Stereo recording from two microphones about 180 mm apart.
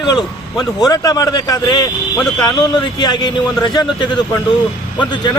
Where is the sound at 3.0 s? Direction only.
25° left (ahead or behind).